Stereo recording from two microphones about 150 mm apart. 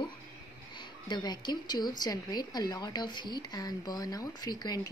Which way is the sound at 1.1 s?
30° left (ahead or behind).